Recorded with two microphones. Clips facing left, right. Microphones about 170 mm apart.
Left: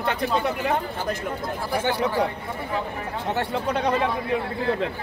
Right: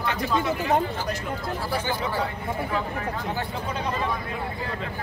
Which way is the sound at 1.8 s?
70° left (ahead or behind).